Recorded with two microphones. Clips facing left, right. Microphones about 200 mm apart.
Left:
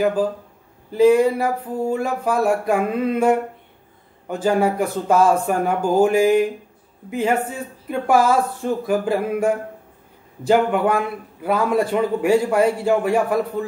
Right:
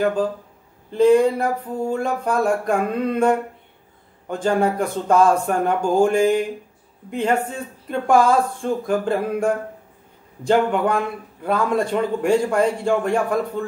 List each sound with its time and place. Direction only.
0.0 s a man's voice: 5° left (ahead or behind)